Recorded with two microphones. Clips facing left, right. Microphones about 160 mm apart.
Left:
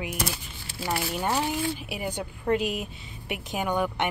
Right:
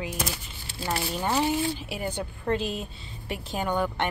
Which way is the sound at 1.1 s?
10° left (ahead or behind).